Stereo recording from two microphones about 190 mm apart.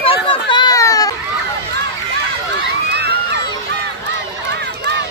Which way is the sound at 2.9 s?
60° right (ahead or behind).